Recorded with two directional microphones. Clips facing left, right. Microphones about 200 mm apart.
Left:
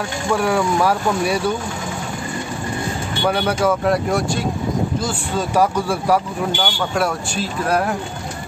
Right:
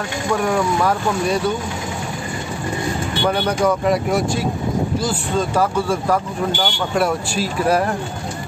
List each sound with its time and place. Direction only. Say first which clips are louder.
0.3 s speech: left 1 dB; 5° left (ahead or behind)
3.3 s speech: even; 5° left (ahead or behind)
5.5 s speech: left 4 dB; 10° left (ahead or behind)
6.6 s speech: right 2 dB; centre (ahead or behind)